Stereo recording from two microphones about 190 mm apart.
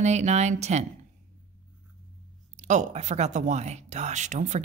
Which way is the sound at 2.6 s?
40° right (ahead or behind).